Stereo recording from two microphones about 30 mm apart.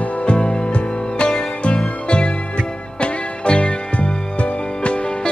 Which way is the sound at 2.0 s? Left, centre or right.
Left.